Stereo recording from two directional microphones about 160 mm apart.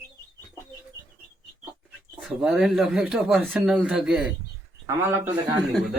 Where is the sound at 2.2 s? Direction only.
Centre (ahead or behind).